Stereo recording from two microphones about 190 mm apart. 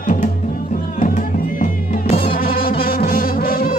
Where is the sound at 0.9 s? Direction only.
45° left (ahead or behind).